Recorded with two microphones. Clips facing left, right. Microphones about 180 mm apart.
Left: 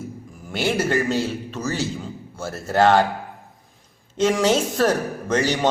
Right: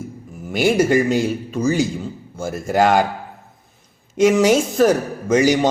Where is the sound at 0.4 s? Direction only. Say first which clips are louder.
Right 6 dB; 10° right (ahead or behind).